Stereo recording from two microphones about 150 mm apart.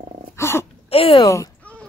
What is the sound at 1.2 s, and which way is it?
Speech, 20° left (ahead or behind).